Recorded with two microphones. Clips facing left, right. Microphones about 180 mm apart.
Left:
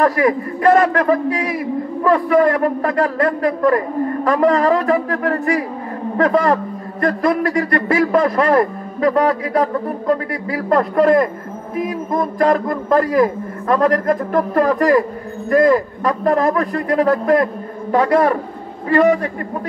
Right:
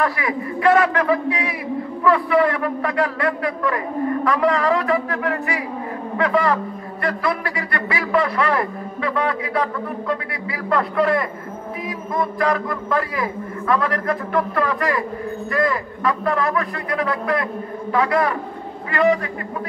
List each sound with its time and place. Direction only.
0.0 s a man's voice: 40° left (ahead or behind)